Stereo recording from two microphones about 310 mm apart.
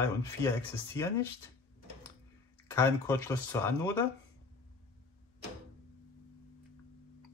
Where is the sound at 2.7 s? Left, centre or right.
Centre.